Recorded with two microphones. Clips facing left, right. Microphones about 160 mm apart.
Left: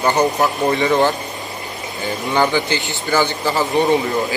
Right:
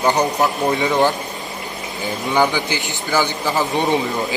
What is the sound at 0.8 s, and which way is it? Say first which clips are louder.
Speech: left 1 dB; 10° right (ahead or behind).